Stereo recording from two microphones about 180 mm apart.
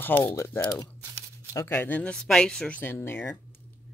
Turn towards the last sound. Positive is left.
turn(degrees=10)  # may be behind; listen again after turning